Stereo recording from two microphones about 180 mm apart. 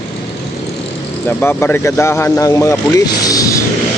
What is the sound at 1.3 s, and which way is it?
Speech, 10° left (ahead or behind).